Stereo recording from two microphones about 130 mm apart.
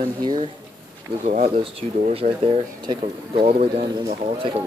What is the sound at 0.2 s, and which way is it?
Speech, 35° right (ahead or behind).